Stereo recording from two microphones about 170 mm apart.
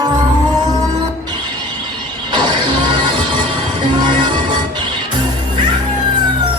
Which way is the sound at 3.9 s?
25° right (ahead or behind).